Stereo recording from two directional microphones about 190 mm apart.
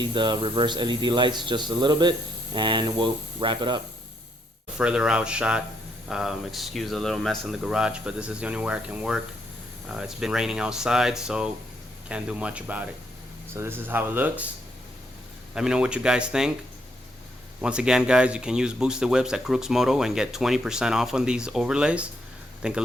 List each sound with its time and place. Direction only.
0.0 s speech: 25° right (ahead or behind)
4.8 s speech: 5° right (ahead or behind)
15.5 s speech: 5° right (ahead or behind)
17.6 s speech: 5° right (ahead or behind)